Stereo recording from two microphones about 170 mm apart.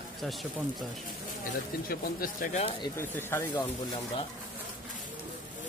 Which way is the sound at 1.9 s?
55° left (ahead or behind).